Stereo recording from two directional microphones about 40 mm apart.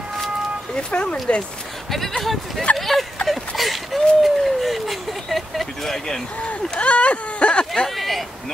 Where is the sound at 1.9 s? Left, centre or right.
Centre.